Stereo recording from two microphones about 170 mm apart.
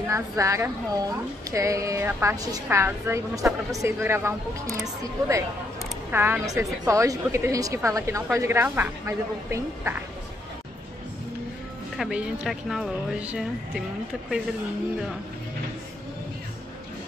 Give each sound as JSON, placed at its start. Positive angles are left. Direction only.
{"t": 0.1, "sound": "a woman's voice", "side_deg": -15}
{"t": 6.1, "sound": "a woman's voice", "side_deg": -15}
{"t": 12.0, "sound": "speech", "side_deg": -5}